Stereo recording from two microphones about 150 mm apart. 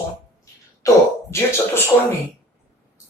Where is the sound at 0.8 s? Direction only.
20° left (ahead or behind).